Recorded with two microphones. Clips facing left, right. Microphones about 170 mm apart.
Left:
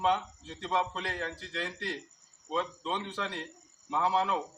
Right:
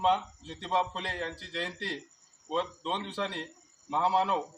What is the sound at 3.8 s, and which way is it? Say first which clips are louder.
Speech: right 1 dB; 25° right (ahead or behind).